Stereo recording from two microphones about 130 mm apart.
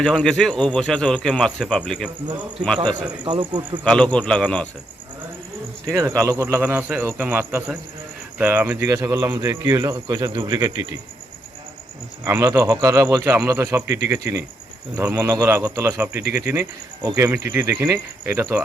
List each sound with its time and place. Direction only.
0.0 s speech: 5° left (ahead or behind)
3.2 s speech: 35° right (ahead or behind)
3.8 s a man's voice: 10° left (ahead or behind)
5.8 s speech: 25° right (ahead or behind)
12.2 s speech: 25° right (ahead or behind)
13.2 s speech: 15° right (ahead or behind)
13.5 s speech: 25° right (ahead or behind)